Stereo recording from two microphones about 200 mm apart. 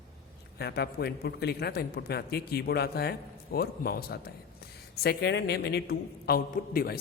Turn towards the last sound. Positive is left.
turn(degrees=50)  # may be behind; listen again after turning